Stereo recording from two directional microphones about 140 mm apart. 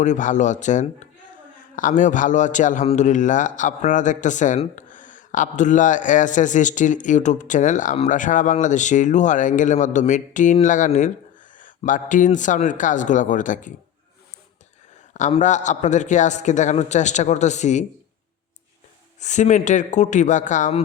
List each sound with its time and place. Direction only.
0.0 s speech: 60° left (ahead or behind)
15.4 s speech: 60° left (ahead or behind)
19.2 s speech: 60° left (ahead or behind)